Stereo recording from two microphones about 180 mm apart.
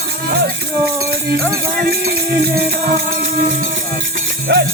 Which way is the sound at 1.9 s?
60° right (ahead or behind).